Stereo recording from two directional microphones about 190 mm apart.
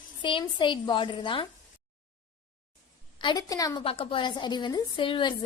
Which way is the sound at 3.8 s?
30° left (ahead or behind).